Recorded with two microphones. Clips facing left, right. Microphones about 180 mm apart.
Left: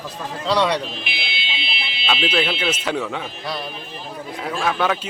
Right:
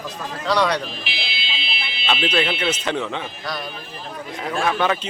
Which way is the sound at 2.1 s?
5° left (ahead or behind).